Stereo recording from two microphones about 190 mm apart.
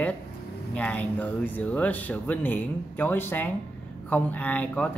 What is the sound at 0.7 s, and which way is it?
Speech, 10° left (ahead or behind).